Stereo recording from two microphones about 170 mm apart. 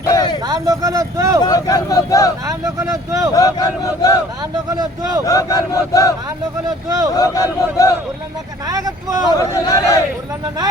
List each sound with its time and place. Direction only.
0.1 s a sound: 20° left (ahead or behind)
0.4 s speech: 20° right (ahead or behind)
1.5 s crowd: 20° left (ahead or behind)
2.5 s speech: 20° right (ahead or behind)
3.3 s crowd: 20° left (ahead or behind)
4.7 s speech: 25° right (ahead or behind)
5.2 s crowd: 20° left (ahead or behind)
6.7 s speech: 20° right (ahead or behind)
7.2 s crowd: 20° left (ahead or behind)
8.6 s speech: 20° right (ahead or behind)
9.4 s a man's voice: 20° left (ahead or behind)